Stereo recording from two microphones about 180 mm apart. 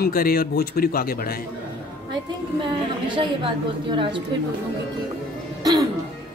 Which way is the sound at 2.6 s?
25° right (ahead or behind).